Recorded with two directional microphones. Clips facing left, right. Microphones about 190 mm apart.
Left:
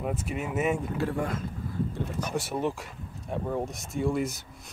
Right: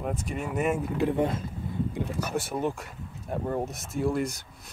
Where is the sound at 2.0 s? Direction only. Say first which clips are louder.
Right 1 dB; 10° right (ahead or behind).